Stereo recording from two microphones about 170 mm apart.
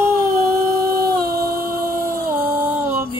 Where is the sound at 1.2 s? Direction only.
60° right (ahead or behind).